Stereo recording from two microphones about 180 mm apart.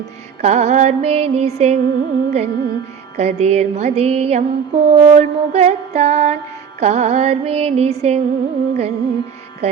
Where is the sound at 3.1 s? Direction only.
35° right (ahead or behind).